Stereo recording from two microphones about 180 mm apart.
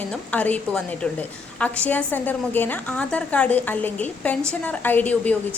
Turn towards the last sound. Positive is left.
turn(degrees=10)  # may be behind; listen again after turning